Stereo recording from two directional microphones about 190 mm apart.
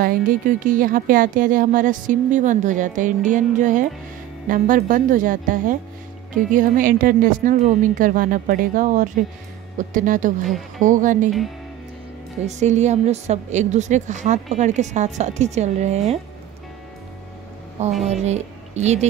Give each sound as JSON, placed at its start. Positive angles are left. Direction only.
{"t": 0.0, "sound": "speech", "side_deg": -45}
{"t": 12.4, "sound": "a woman's voice", "side_deg": -40}
{"t": 18.0, "sound": "speech", "side_deg": -35}